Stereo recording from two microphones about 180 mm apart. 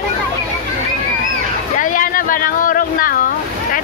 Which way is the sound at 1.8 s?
50° left (ahead or behind).